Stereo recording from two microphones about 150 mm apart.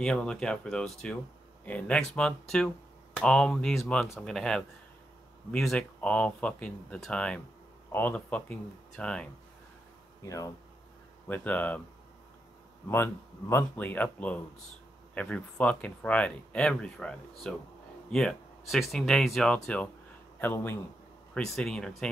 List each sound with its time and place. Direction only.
0.0 s speech: 5° left (ahead or behind)
10.2 s speech: 20° left (ahead or behind)
12.8 s speech: 15° left (ahead or behind)
21.3 s speech: 5° left (ahead or behind)